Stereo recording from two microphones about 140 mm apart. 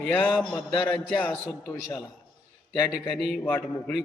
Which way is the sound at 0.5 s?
10° left (ahead or behind).